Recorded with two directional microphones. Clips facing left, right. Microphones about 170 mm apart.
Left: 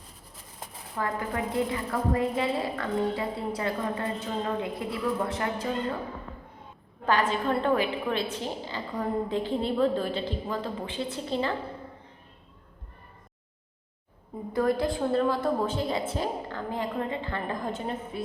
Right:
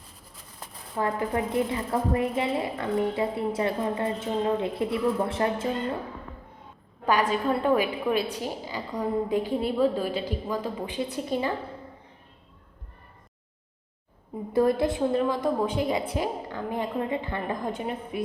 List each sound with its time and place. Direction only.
0.9 s a woman's voice: 25° right (ahead or behind)
7.0 s a woman's voice: 15° right (ahead or behind)
14.5 s a woman's voice: 25° right (ahead or behind)